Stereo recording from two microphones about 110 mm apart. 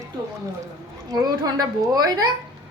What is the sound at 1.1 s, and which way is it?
A woman's voice, 35° right (ahead or behind).